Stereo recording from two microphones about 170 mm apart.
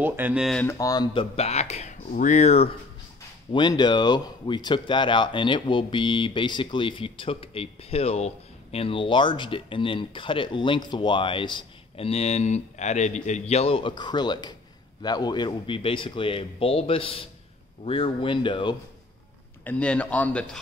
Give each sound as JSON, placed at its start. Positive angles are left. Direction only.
{"t": 0.0, "sound": "speech", "side_deg": -10}
{"t": 0.6, "sound": "speech", "side_deg": 15}
{"t": 1.3, "sound": "speech", "side_deg": 40}
{"t": 3.5, "sound": "speech", "side_deg": 25}
{"t": 19.6, "sound": "speech", "side_deg": 10}